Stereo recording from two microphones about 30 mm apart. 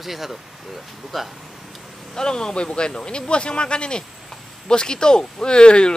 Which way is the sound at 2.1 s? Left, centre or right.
Left.